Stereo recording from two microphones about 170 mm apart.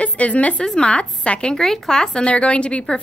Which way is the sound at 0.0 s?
10° left (ahead or behind).